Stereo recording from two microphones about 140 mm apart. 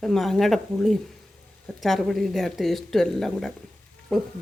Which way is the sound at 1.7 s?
Centre (ahead or behind).